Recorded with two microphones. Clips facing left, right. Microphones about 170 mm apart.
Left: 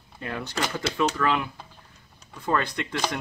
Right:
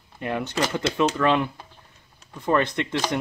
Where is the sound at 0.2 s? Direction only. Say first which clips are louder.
Right 5 dB; 20° right (ahead or behind).